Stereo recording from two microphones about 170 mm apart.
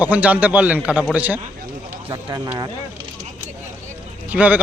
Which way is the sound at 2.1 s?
25° right (ahead or behind).